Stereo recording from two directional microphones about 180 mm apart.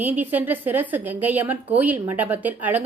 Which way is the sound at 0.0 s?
10° right (ahead or behind).